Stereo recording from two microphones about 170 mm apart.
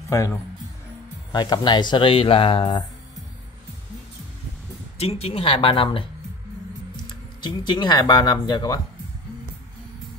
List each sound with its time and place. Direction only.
0.1 s speech: 15° left (ahead or behind)
4.9 s speech: 35° left (ahead or behind)
7.1 s speech: 25° left (ahead or behind)